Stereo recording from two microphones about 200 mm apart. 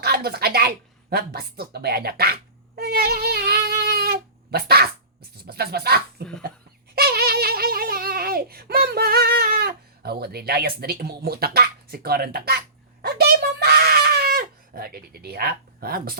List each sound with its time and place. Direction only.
0.0 s a sound: 50° right (ahead or behind)
5.5 s speech: 50° right (ahead or behind)
6.9 s giggle: 50° right (ahead or behind)